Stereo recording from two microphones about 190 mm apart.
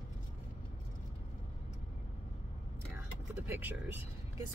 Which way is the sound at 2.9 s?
10° right (ahead or behind).